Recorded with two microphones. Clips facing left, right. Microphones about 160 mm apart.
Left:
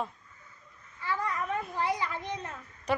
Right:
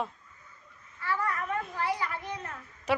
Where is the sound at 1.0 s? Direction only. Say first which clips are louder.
Right 1 dB; 15° left (ahead or behind).